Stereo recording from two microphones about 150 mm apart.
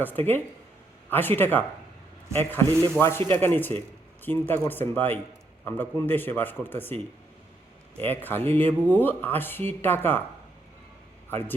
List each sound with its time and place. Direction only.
0.0 s speech: 10° left (ahead or behind)
2.7 s speech: 20° right (ahead or behind)
3.0 s speech: 15° left (ahead or behind)